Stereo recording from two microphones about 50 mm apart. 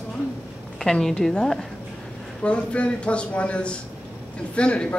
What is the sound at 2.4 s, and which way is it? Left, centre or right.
Speech, left.